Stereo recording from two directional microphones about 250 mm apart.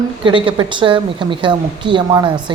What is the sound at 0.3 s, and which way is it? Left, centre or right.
Speech, centre.